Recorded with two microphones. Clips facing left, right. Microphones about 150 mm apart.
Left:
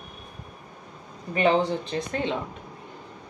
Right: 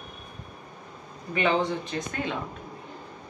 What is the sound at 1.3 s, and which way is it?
Speech, 35° left (ahead or behind).